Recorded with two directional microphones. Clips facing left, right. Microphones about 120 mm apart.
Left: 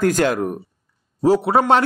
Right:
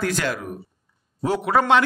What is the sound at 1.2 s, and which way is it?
Speech, 35° left (ahead or behind).